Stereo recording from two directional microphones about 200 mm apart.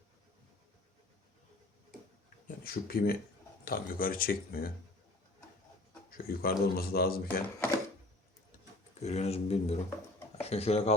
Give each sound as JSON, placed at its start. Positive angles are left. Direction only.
{"t": 2.6, "sound": "a man's voice", "side_deg": 50}
{"t": 6.1, "sound": "a man's voice", "side_deg": 50}
{"t": 9.0, "sound": "speech", "side_deg": 35}